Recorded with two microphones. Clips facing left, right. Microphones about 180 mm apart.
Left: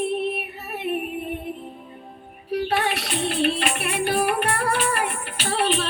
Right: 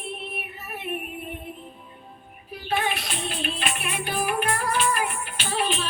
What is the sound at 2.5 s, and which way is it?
Music, 75° left (ahead or behind).